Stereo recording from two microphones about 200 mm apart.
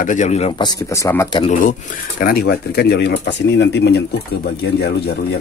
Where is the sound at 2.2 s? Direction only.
50° left (ahead or behind).